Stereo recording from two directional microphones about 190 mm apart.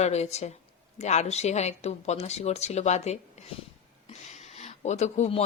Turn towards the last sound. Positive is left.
turn(degrees=35)  # may be behind; listen again after turning